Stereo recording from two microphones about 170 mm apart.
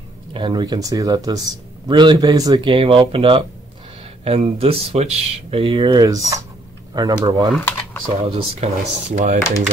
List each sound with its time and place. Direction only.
0.3 s speech: 30° right (ahead or behind)
7.5 s a sound: 10° left (ahead or behind)
8.2 s speech: 35° right (ahead or behind)